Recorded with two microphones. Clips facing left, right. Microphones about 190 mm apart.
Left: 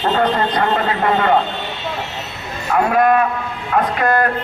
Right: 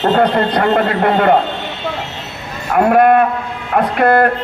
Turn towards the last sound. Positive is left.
turn(degrees=-60)  # may be behind; listen again after turning